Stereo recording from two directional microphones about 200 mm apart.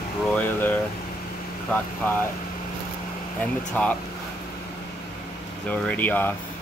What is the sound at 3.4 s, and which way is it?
Speech, 5° left (ahead or behind).